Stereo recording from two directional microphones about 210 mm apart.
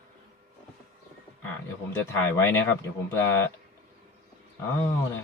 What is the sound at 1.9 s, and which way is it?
Speech, 10° left (ahead or behind).